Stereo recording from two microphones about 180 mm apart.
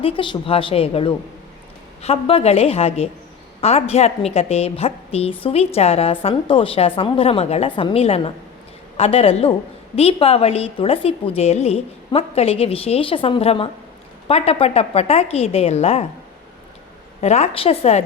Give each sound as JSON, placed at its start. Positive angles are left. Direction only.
{"t": 0.0, "sound": "a woman's voice", "side_deg": 30}
{"t": 17.2, "sound": "a woman's voice", "side_deg": 35}